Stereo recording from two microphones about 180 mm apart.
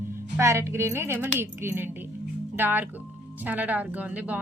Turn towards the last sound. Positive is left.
turn(degrees=-10)  # may be behind; listen again after turning